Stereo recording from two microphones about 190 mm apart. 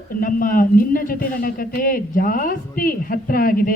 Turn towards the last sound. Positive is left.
turn(degrees=50)  # may be behind; listen again after turning